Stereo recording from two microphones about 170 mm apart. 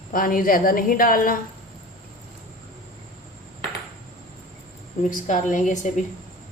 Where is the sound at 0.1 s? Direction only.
55° left (ahead or behind).